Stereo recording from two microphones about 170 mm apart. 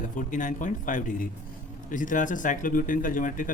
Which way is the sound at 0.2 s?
50° left (ahead or behind).